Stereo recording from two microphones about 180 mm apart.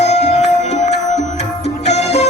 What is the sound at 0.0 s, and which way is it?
Music, 40° left (ahead or behind).